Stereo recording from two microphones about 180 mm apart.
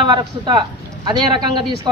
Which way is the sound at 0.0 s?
25° right (ahead or behind).